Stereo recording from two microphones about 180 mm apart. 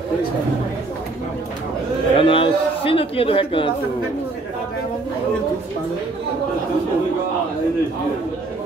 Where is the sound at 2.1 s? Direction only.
30° left (ahead or behind).